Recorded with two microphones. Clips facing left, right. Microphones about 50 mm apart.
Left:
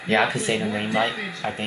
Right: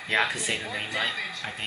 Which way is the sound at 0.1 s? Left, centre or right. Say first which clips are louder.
Left 5 dB; left.